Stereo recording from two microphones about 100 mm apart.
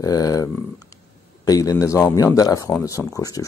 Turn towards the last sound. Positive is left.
turn(degrees=35)  # may be behind; listen again after turning